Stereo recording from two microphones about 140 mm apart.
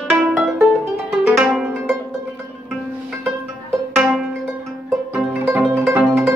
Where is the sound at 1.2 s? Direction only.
5° right (ahead or behind).